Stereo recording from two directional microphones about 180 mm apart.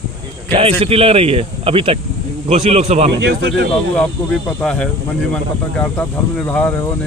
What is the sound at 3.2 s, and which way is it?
Speech, 75° right (ahead or behind).